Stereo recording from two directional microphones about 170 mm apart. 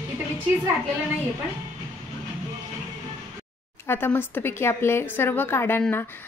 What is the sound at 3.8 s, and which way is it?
A woman's voice, 15° left (ahead or behind).